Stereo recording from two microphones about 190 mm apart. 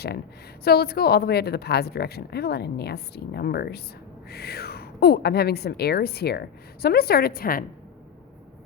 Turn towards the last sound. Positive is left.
turn(degrees=50)  # may be behind; listen again after turning